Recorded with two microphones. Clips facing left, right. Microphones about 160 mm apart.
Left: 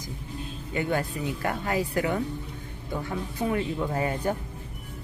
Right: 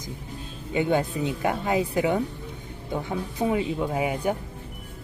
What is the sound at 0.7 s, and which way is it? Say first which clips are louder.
A woman's voice: right 4 dB; 20° right (ahead or behind).